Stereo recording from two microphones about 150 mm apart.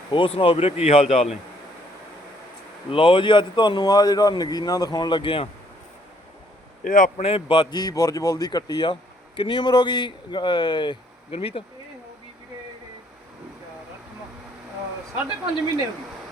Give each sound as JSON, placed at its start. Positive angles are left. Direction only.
{"t": 0.1, "sound": "speech", "side_deg": 35}
{"t": 2.9, "sound": "speech", "side_deg": 35}
{"t": 6.8, "sound": "speech", "side_deg": 60}
{"t": 7.2, "sound": "speech", "side_deg": 40}